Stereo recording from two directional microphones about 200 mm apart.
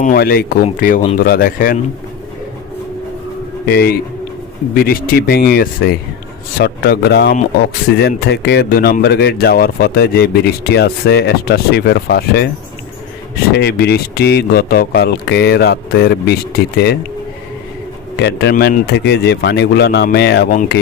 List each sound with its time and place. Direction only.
0.0 s speech: 45° left (ahead or behind)
3.7 s speech: 50° left (ahead or behind)
13.5 s speech: 55° left (ahead or behind)
18.2 s a man's voice: 60° left (ahead or behind)
18.5 s a man's voice: 45° left (ahead or behind)